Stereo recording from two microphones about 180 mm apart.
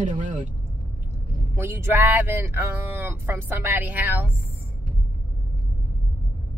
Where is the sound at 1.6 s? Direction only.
15° right (ahead or behind).